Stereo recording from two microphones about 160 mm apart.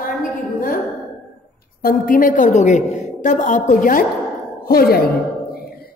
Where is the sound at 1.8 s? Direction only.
60° left (ahead or behind).